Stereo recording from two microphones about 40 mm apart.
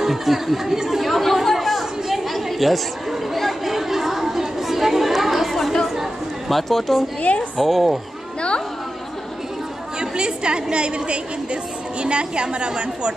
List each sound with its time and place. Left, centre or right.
0.0 s chatter: centre
6.5 s speech: centre
7.2 s a woman's voice: left
7.5 s speech: centre
8.4 s chatter: left
9.9 s a woman's voice: right